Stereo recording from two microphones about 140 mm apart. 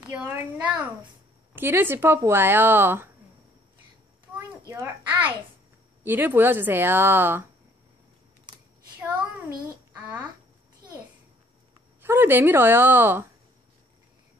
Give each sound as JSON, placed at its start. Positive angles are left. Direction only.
{"t": 0.1, "sound": "speech", "side_deg": -10}
{"t": 4.4, "sound": "a sound", "side_deg": -15}
{"t": 6.0, "sound": "speech", "side_deg": -15}
{"t": 12.0, "sound": "speech", "side_deg": -15}